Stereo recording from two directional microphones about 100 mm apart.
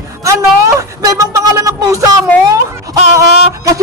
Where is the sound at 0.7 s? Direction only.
30° right (ahead or behind).